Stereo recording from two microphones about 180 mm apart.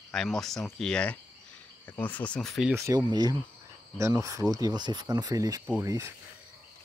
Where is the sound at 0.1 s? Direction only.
Centre (ahead or behind).